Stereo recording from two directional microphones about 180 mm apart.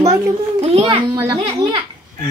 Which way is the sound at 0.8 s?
15° right (ahead or behind).